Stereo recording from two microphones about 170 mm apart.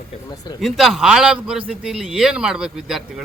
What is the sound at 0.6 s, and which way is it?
A man's voice, centre (ahead or behind).